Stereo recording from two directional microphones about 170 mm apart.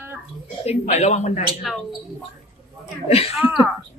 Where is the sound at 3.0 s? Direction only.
35° left (ahead or behind).